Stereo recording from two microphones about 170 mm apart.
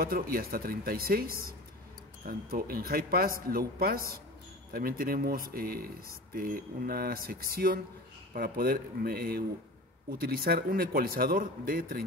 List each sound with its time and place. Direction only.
0.0 s speech: 60° right (ahead or behind)